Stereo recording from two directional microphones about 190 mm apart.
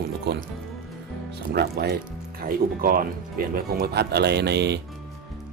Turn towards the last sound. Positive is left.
turn(degrees=-60)  # may be behind; listen again after turning